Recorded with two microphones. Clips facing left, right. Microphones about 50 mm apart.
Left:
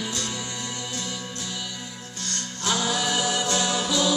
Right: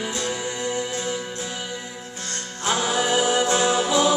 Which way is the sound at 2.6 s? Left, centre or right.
Right.